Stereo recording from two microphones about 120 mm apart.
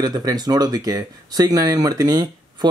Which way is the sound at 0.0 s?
30° right (ahead or behind).